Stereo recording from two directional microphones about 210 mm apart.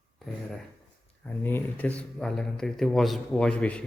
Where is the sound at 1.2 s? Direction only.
10° left (ahead or behind).